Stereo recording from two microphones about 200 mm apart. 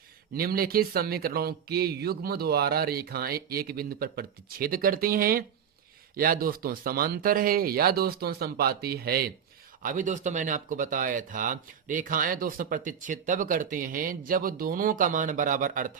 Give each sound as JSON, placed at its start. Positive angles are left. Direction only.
{"t": 0.3, "sound": "speech", "side_deg": -50}
{"t": 9.8, "sound": "speech", "side_deg": -40}